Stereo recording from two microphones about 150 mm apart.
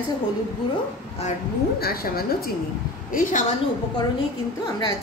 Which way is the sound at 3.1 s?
60° left (ahead or behind).